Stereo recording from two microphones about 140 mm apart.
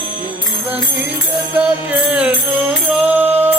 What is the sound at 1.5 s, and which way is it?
Music, 10° right (ahead or behind).